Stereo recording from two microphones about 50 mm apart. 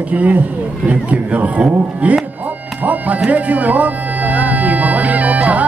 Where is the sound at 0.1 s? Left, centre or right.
Right.